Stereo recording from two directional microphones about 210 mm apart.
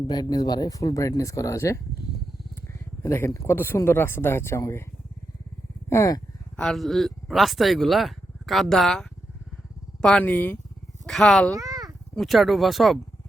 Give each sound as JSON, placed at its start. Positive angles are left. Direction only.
{"t": 0.1, "sound": "speech", "side_deg": 20}
{"t": 5.9, "sound": "speech", "side_deg": 15}
{"t": 6.6, "sound": "speech", "side_deg": 0}
{"t": 11.5, "sound": "a sound", "side_deg": -15}
{"t": 12.1, "sound": "speech", "side_deg": 0}